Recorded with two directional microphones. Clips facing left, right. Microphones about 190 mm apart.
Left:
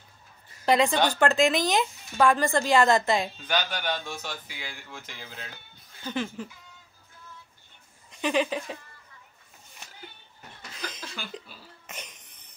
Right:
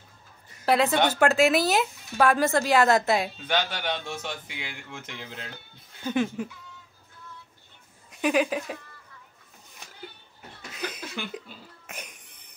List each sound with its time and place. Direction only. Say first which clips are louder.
0.7 s a woman's voice: even; 5° right (ahead or behind)
3.4 s a man's voice: right 1 dB; 25° right (ahead or behind)
6.0 s speech: right 5 dB; 10° right (ahead or behind)
8.1 s speech: right 2 dB; 10° right (ahead or behind)
11.1 s cough: right 4 dB; 15° right (ahead or behind)